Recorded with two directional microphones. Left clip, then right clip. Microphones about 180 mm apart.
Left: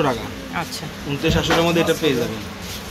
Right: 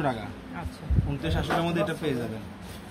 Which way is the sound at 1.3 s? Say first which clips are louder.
Left 11 dB; 60° right (ahead or behind).